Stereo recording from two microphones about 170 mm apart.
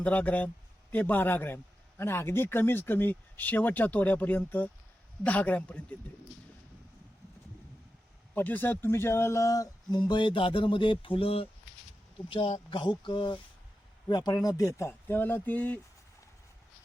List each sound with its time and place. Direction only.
0.0 s a man's voice: 10° left (ahead or behind)
8.4 s a man's voice: 10° left (ahead or behind)